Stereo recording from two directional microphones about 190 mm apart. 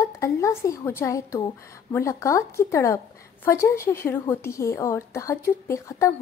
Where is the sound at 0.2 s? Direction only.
15° left (ahead or behind).